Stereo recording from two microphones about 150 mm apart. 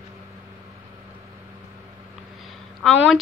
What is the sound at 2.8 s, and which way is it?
Speech, centre (ahead or behind).